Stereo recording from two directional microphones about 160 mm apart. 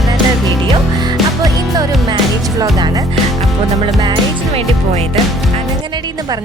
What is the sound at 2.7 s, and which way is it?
Music, 20° right (ahead or behind).